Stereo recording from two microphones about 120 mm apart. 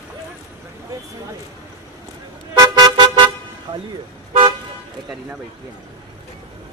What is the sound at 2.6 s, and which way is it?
Car, 35° right (ahead or behind).